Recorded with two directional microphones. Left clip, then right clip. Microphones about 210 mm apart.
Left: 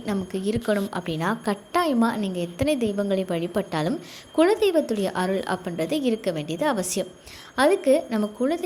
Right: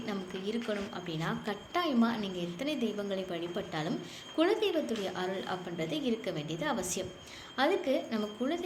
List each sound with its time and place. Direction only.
0.0 s a woman's voice: 45° left (ahead or behind)